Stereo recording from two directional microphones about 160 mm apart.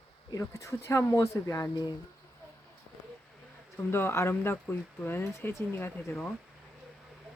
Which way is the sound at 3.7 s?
15° left (ahead or behind).